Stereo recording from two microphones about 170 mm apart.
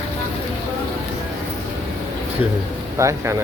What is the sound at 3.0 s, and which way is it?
Speech, 15° right (ahead or behind).